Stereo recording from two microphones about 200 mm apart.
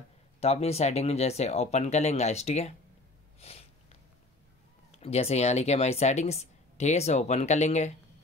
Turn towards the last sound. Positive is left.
turn(degrees=35)  # may be behind; listen again after turning